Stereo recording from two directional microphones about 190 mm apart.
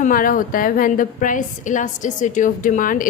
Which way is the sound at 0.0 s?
45° left (ahead or behind).